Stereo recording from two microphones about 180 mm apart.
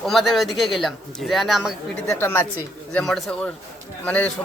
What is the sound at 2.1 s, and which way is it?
A woman's voice, 15° left (ahead or behind).